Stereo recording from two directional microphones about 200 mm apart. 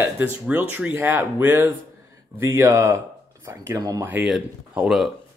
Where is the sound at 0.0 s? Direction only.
10° right (ahead or behind).